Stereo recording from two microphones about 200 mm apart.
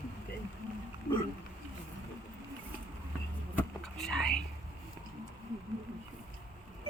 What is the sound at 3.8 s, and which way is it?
Whispering, centre (ahead or behind).